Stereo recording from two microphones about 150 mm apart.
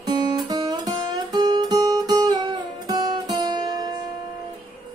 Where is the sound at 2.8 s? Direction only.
25° right (ahead or behind).